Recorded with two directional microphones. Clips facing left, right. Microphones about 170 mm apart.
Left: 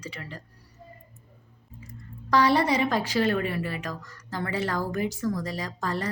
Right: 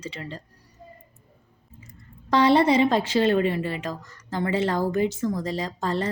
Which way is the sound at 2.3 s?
25° right (ahead or behind).